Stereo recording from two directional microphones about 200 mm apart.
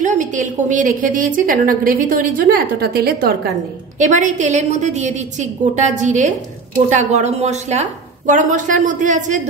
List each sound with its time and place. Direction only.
0.0 s a woman's voice: 40° right (ahead or behind)
4.0 s a woman's voice: 40° right (ahead or behind)